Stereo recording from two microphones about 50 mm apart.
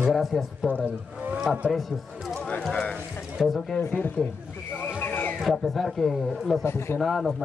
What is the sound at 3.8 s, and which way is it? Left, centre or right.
Speech, left.